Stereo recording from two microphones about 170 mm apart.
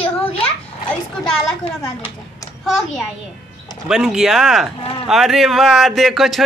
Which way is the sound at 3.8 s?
5° right (ahead or behind).